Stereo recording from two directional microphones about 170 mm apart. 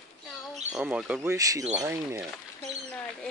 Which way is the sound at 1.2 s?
20° right (ahead or behind).